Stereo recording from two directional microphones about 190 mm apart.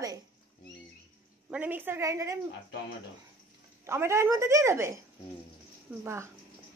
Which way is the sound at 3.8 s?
15° right (ahead or behind).